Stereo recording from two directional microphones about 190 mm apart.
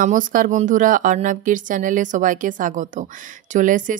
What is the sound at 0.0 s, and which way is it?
A woman's voice, 45° right (ahead or behind).